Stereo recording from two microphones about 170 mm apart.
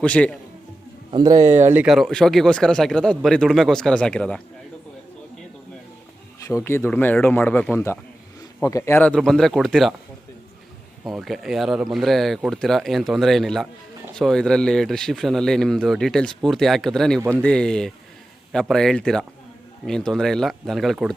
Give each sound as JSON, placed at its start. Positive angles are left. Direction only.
{"t": 0.0, "sound": "speech", "side_deg": 5}
{"t": 1.1, "sound": "speech", "side_deg": -20}
{"t": 6.5, "sound": "speech", "side_deg": 15}
{"t": 11.0, "sound": "speech", "side_deg": 0}
{"t": 17.2, "sound": "speech", "side_deg": -15}
{"t": 17.4, "sound": "speech", "side_deg": 5}